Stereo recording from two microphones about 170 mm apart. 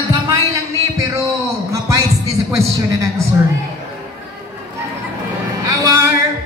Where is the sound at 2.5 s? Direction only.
15° right (ahead or behind).